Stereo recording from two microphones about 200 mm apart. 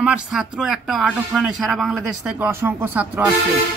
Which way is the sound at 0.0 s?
5° right (ahead or behind).